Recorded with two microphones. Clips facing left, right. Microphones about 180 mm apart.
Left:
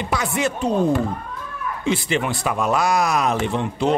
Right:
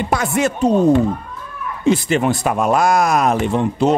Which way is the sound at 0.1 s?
50° right (ahead or behind).